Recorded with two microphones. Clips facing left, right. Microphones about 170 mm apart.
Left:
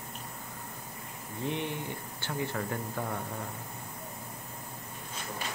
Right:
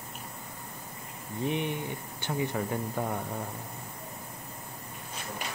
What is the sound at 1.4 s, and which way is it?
Speech, 15° right (ahead or behind).